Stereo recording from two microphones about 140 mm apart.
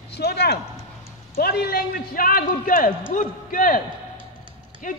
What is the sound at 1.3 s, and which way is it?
A man's voice, 90° left.